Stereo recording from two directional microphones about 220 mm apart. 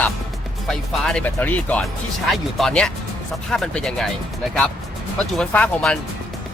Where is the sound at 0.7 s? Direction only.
Centre (ahead or behind).